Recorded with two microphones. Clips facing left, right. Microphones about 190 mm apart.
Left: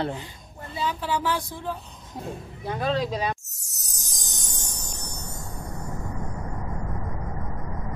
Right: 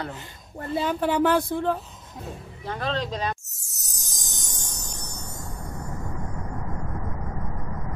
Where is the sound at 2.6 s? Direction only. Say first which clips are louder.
Left 3 dB; 10° left (ahead or behind).